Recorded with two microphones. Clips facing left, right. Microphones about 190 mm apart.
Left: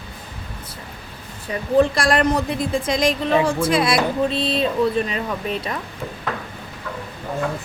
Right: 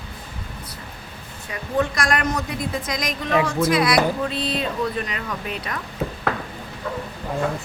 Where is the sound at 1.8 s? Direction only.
30° left (ahead or behind).